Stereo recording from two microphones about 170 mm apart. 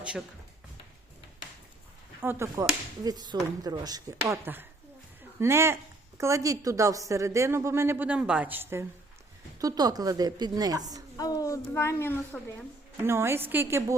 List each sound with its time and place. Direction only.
2.2 s a woman's voice: 15° right (ahead or behind)
11.2 s a child's voice: 20° left (ahead or behind)
13.1 s a woman's voice: 15° right (ahead or behind)